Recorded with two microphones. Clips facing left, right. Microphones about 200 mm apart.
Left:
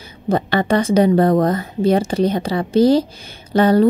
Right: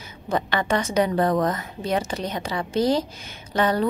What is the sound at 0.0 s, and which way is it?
A woman's voice, 35° left (ahead or behind).